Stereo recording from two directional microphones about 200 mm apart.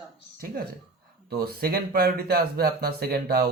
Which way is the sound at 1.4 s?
50° right (ahead or behind).